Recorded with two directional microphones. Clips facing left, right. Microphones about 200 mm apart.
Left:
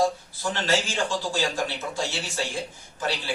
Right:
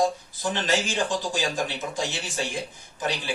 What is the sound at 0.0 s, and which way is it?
A man's voice, 15° right (ahead or behind).